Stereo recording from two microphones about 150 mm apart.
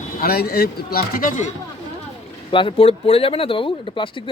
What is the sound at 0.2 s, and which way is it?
Speech, 90° left.